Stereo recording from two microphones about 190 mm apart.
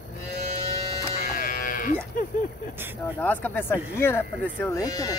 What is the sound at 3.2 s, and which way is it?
Speech, 10° left (ahead or behind).